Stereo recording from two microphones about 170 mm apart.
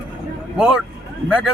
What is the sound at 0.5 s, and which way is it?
Speech, 5° right (ahead or behind).